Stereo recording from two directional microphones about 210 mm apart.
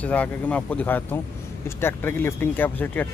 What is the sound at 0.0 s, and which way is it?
Speech, 5° left (ahead or behind).